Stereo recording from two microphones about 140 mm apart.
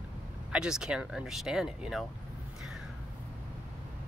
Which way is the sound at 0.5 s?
5° right (ahead or behind).